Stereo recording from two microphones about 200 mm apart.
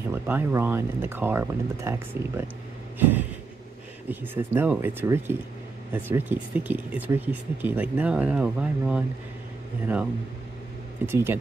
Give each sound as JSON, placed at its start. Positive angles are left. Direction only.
{"t": 0.1, "sound": "speech", "side_deg": -10}
{"t": 11.1, "sound": "speech", "side_deg": -10}